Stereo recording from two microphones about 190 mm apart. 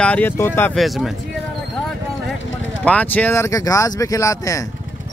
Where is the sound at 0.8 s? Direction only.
Centre (ahead or behind).